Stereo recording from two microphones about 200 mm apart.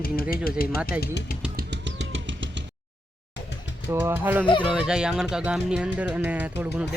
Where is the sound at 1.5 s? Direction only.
60° right (ahead or behind).